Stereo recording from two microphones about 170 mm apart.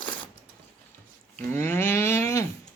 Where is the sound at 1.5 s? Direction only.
15° left (ahead or behind).